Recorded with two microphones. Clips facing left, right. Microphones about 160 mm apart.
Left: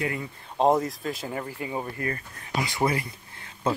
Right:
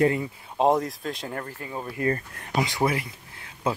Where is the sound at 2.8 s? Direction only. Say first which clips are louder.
Even; 5° right (ahead or behind).